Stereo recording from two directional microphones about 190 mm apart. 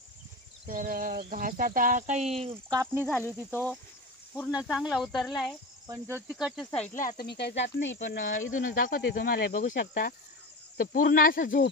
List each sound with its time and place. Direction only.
0.7 s speech: 45° right (ahead or behind)
2.5 s speech: 15° right (ahead or behind)
3.1 s speech: 10° left (ahead or behind)
3.3 s speech: 10° right (ahead or behind)
5.9 s speech: 10° right (ahead or behind); by 7.0 s 5° left (ahead or behind)
7.0 s speech: 45° left (ahead or behind)
7.2 s speech: 60° left (ahead or behind)
7.8 s speech: 75° left (ahead or behind)
8.5 s speech: 45° left (ahead or behind)